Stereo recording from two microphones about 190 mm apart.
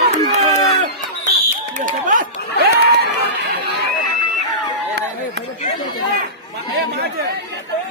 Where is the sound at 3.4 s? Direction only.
60° right (ahead or behind).